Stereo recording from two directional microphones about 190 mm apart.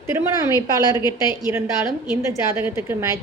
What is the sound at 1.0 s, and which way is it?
Speech, 20° left (ahead or behind).